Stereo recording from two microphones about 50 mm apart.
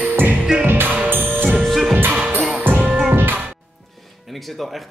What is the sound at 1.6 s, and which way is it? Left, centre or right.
Music, centre.